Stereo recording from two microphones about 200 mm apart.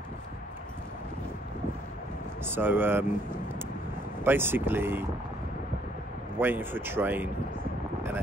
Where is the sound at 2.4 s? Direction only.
10° right (ahead or behind).